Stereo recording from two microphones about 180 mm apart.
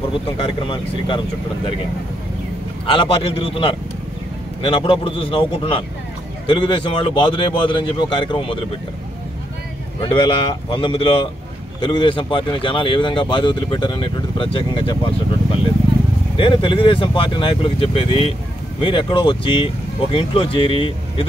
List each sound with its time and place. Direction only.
0.4 s speech: 30° left (ahead or behind)
2.9 s speech: 30° left (ahead or behind)
9.9 s speech: 30° left (ahead or behind)
16.3 s speech: 30° left (ahead or behind)